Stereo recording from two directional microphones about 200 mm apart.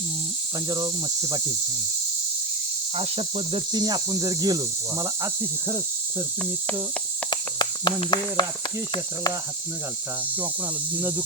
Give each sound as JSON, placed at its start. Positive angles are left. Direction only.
{"t": 0.7, "sound": "cricket", "side_deg": -20}
{"t": 2.9, "sound": "cricket", "side_deg": -30}
{"t": 7.3, "sound": "cricket", "side_deg": 20}